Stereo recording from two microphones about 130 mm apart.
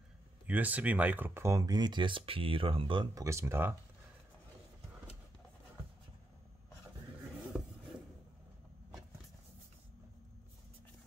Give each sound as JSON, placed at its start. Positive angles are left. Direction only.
{"t": 0.5, "sound": "speech", "side_deg": -10}
{"t": 3.2, "sound": "speech", "side_deg": -20}
{"t": 7.5, "sound": "a sound", "side_deg": -5}